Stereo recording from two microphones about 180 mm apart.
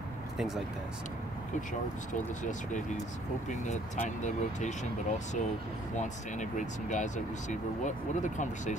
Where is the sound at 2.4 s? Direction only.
45° left (ahead or behind).